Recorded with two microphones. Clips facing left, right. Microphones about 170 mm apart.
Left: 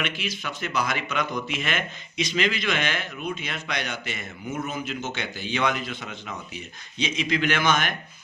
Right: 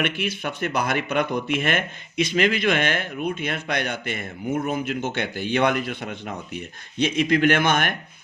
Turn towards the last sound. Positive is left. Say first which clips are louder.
# right 4 dB
turn(degrees=-55)  # may be behind; listen again after turning